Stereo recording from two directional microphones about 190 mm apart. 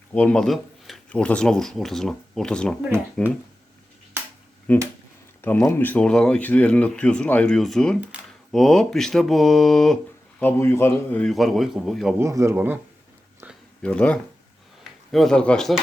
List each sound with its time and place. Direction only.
0.1 s speech: 5° left (ahead or behind)
4.7 s speech: 10° left (ahead or behind)
12.2 s speech: 15° right (ahead or behind)
13.8 s speech: 5° left (ahead or behind)